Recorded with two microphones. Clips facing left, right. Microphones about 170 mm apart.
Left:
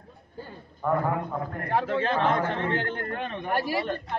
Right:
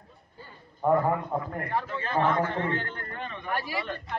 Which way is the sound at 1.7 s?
80° left.